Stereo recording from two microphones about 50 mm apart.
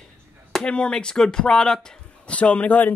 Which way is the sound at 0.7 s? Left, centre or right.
Left.